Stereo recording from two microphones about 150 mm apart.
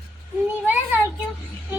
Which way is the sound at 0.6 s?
10° right (ahead or behind).